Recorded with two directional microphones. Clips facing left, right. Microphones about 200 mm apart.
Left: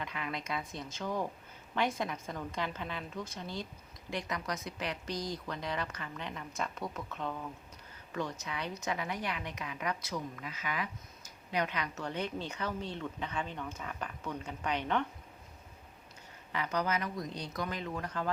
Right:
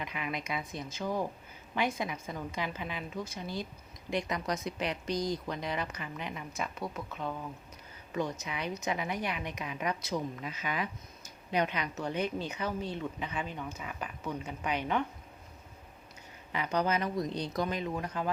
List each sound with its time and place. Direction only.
0.0 s a woman's voice: 15° right (ahead or behind)
8.1 s a woman's voice: 15° right (ahead or behind)
16.5 s speech: 20° right (ahead or behind)
17.7 s a woman's voice: 15° right (ahead or behind)